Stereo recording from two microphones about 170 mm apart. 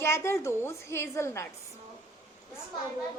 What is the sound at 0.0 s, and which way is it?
A woman's voice, 15° left (ahead or behind).